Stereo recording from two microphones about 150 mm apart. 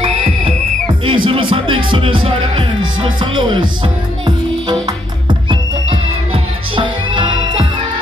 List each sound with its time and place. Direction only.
1.0 s music: 35° right (ahead or behind)
1.9 s speech: 35° right (ahead or behind)
4.6 s music: 30° right (ahead or behind)